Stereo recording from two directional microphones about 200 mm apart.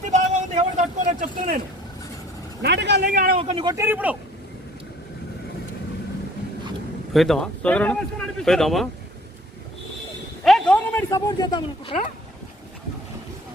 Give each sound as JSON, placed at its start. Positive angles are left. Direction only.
{"t": 0.1, "sound": "vehicle", "side_deg": -35}
{"t": 2.6, "sound": "speech", "side_deg": -60}
{"t": 3.1, "sound": "speech", "side_deg": -45}
{"t": 3.3, "sound": "speech", "side_deg": -30}
{"t": 7.1, "sound": "speech", "side_deg": 0}
{"t": 10.4, "sound": "a man's voice", "side_deg": 5}